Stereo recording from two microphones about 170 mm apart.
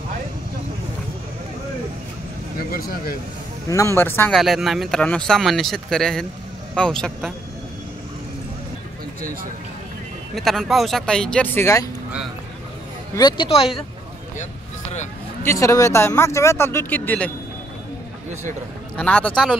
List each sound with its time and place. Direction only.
2.7 s speech: 60° left (ahead or behind)
3.6 s speech: 20° left (ahead or behind)
4.4 s speech: centre (ahead or behind)
9.2 s speech: 60° right (ahead or behind)
10.3 s speech: centre (ahead or behind); by 11.9 s 20° left (ahead or behind)
13.1 s speech: 25° left (ahead or behind)
14.4 s vehicle: 45° left (ahead or behind)
15.4 s speech: 20° left (ahead or behind)
18.9 s speech: 5° left (ahead or behind)